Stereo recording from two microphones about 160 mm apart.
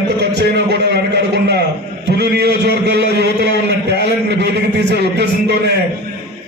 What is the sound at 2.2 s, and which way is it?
A man's voice, 90° right.